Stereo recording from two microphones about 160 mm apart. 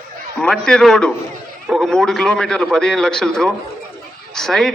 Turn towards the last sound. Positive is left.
turn(degrees=0)  # may be behind; listen again after turning